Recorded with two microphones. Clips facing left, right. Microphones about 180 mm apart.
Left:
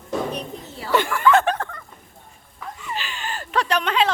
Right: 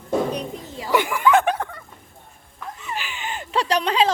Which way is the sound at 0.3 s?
15° right (ahead or behind).